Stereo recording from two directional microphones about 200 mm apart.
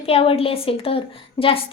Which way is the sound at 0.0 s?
30° left (ahead or behind).